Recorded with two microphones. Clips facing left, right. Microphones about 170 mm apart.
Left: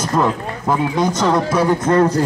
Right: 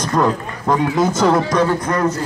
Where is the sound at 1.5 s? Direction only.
20° left (ahead or behind).